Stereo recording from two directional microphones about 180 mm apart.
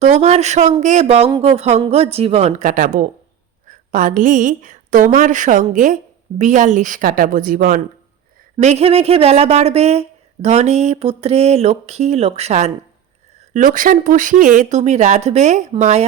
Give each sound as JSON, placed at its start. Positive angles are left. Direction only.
{"t": 0.0, "sound": "speech", "side_deg": -40}
{"t": 8.6, "sound": "speech", "side_deg": -35}